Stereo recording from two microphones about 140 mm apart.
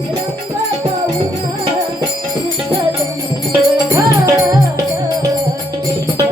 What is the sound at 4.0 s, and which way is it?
Music, 25° right (ahead or behind).